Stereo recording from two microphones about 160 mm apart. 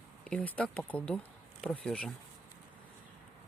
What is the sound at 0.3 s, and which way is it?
Speech, 10° left (ahead or behind).